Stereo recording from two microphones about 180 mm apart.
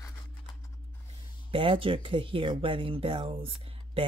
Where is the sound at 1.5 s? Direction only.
30° right (ahead or behind).